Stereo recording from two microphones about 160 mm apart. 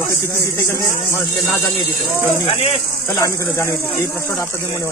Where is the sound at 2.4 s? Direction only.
35° left (ahead or behind).